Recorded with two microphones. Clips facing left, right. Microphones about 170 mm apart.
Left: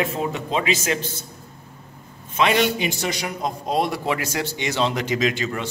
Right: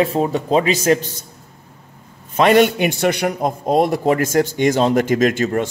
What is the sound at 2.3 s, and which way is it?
A man's voice, 50° right (ahead or behind).